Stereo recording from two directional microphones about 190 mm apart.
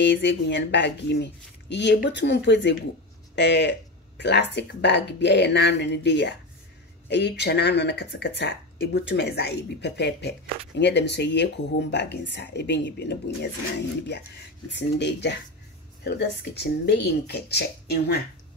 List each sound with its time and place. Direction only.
0.0 s speech: 65° left (ahead or behind)